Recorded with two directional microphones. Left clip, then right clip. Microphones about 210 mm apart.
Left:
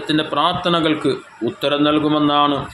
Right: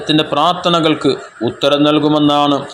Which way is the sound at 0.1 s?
20° right (ahead or behind).